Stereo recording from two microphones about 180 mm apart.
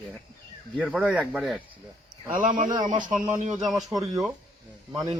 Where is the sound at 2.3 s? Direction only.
45° right (ahead or behind).